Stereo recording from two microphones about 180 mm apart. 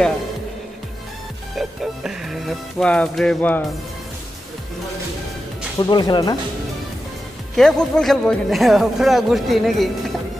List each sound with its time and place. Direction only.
1.6 s speech: centre (ahead or behind)
5.8 s speech: 25° left (ahead or behind)
7.5 s speech: 5° left (ahead or behind)